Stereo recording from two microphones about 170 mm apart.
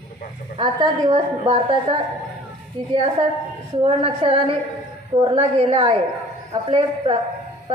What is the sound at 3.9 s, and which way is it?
A woman's voice, 35° right (ahead or behind).